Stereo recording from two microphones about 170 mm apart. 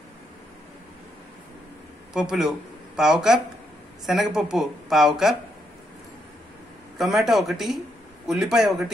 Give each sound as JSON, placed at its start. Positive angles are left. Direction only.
{"t": 2.1, "sound": "speech", "side_deg": -5}
{"t": 7.0, "sound": "speech", "side_deg": 0}